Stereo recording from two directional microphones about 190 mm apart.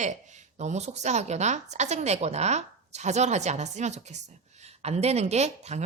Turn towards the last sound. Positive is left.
turn(degrees=-35)  # may be behind; listen again after turning